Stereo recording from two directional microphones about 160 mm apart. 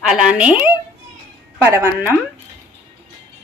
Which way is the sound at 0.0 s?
5° right (ahead or behind).